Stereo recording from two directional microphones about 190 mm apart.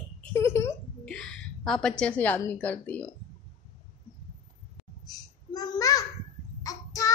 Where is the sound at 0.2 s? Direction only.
15° left (ahead or behind).